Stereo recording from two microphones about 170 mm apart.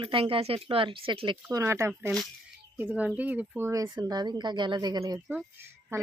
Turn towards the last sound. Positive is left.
turn(degrees=-15)  # may be behind; listen again after turning